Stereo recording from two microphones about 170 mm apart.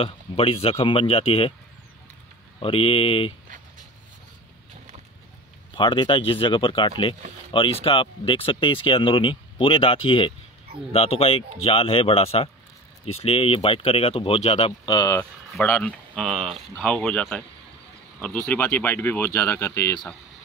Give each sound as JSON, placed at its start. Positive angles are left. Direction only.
{"t": 0.0, "sound": "speech", "side_deg": 35}
{"t": 2.6, "sound": "speech", "side_deg": 35}
{"t": 5.8, "sound": "speech", "side_deg": 30}
{"t": 14.9, "sound": "speech", "side_deg": 20}
{"t": 15.6, "sound": "speech", "side_deg": 10}